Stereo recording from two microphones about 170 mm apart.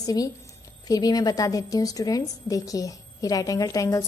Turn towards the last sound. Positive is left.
turn(degrees=20)  # may be behind; listen again after turning